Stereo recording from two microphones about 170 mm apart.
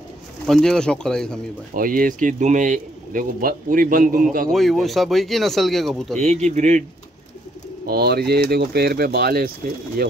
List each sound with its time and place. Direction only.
0.5 s speech: 5° left (ahead or behind)
1.7 s speech: 55° right (ahead or behind)
4.5 s speech: centre (ahead or behind)
6.1 s speech: 40° right (ahead or behind)
7.8 s speech: 70° right (ahead or behind)